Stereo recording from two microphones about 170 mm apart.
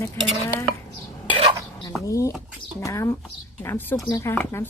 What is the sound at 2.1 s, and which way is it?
Speech, 20° left (ahead or behind).